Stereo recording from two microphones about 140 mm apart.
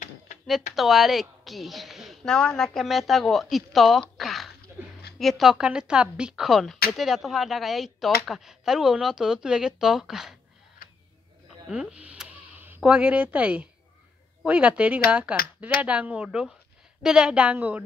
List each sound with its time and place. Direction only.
0.7 s a woman's voice: centre (ahead or behind)
10.8 s a sound: 80° left
11.7 s a woman's voice: 10° right (ahead or behind)